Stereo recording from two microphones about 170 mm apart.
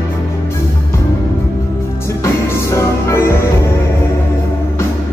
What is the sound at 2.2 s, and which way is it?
Music, 15° left (ahead or behind).